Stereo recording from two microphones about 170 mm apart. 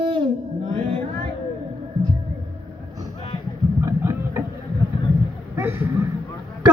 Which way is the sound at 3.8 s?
15° right (ahead or behind).